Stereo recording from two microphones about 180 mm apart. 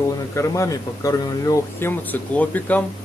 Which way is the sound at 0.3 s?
15° left (ahead or behind).